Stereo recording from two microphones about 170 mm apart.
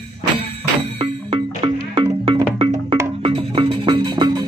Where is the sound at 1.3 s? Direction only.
35° right (ahead or behind).